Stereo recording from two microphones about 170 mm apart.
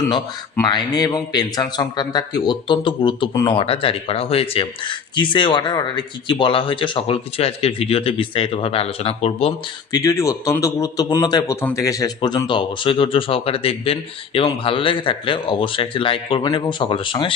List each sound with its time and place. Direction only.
0.6 s speech: 25° left (ahead or behind)
9.9 s speech: 20° left (ahead or behind)